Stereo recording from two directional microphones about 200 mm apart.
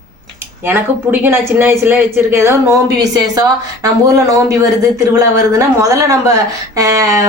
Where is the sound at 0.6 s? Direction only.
10° right (ahead or behind).